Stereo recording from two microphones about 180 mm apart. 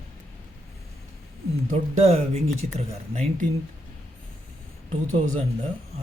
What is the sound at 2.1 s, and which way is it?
Speech, 35° right (ahead or behind).